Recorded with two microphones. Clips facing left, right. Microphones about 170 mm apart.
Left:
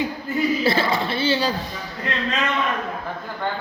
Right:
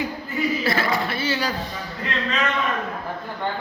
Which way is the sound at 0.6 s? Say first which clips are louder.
Left 2 dB; 30° left (ahead or behind).